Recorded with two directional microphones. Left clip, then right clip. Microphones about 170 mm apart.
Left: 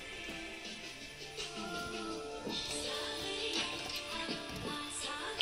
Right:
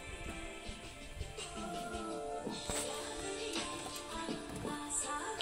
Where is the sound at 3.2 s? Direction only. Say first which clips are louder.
Left 3 dB; 20° right (ahead or behind).